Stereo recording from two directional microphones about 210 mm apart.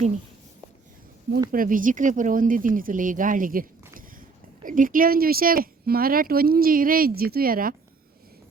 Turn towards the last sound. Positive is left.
turn(degrees=-45)  # may be behind; listen again after turning